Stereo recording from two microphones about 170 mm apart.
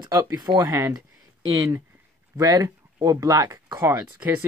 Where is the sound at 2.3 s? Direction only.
20° right (ahead or behind).